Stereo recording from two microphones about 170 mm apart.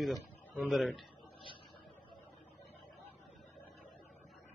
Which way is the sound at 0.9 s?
30° left (ahead or behind).